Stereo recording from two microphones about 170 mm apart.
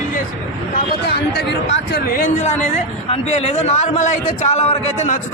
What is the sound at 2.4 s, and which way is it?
A man's voice, 45° left (ahead or behind).